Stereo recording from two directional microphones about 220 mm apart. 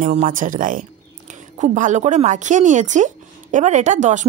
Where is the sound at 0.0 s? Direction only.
35° right (ahead or behind).